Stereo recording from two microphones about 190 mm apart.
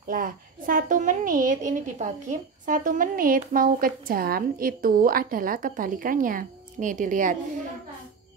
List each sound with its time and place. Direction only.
0.1 s a woman's voice: 45° right (ahead or behind)